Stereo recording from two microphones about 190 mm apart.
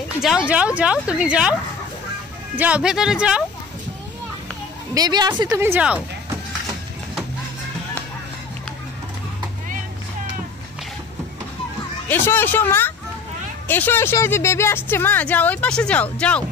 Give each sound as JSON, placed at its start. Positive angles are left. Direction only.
{"t": 0.2, "sound": "speech", "side_deg": -5}
{"t": 4.9, "sound": "a woman's voice", "side_deg": -20}
{"t": 5.5, "sound": "speech", "side_deg": -10}
{"t": 12.1, "sound": "a woman's voice", "side_deg": 10}